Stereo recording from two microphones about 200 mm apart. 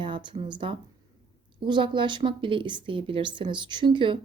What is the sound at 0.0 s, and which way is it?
Speech, 25° right (ahead or behind).